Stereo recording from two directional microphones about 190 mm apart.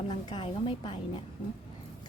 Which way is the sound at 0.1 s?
25° left (ahead or behind).